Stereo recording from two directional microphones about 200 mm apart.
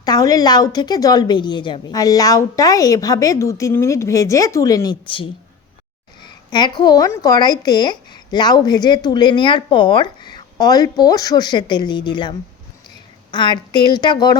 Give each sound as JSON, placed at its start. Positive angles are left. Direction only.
{"t": 0.0, "sound": "a woman's voice", "side_deg": 20}